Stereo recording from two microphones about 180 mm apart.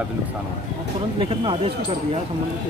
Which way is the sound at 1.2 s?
30° right (ahead or behind).